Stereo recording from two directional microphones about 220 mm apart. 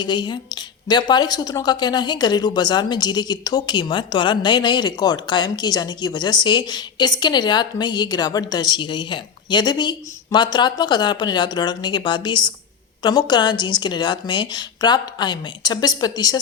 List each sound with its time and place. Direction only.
0.0 s speech: 20° left (ahead or behind)